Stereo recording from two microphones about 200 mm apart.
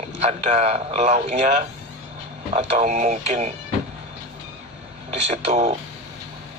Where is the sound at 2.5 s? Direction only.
35° right (ahead or behind).